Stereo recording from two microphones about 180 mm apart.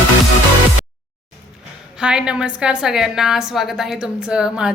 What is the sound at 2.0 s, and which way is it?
A woman's voice, 5° right (ahead or behind).